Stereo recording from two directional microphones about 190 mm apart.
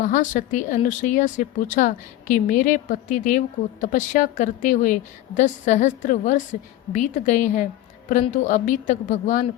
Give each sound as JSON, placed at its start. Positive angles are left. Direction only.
{"t": 0.0, "sound": "speech", "side_deg": 40}